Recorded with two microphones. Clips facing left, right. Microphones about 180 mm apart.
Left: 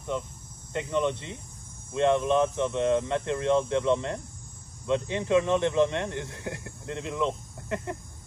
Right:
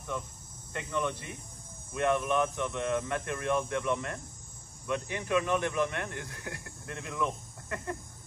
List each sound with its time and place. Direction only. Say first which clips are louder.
0.1 s speech: left 5 dB; 20° left (ahead or behind)